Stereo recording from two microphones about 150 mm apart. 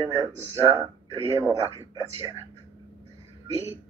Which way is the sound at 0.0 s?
25° right (ahead or behind).